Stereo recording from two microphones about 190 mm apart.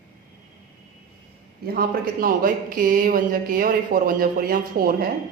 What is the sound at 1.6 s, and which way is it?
Speech, 50° right (ahead or behind).